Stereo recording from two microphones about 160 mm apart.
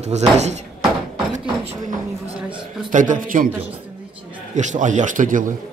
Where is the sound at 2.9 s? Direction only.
55° right (ahead or behind).